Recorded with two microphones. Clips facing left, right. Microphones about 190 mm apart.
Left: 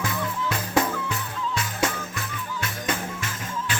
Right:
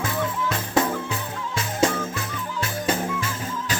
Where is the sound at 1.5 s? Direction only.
30° right (ahead or behind).